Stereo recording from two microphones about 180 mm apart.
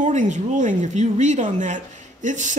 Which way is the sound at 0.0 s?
45° right (ahead or behind).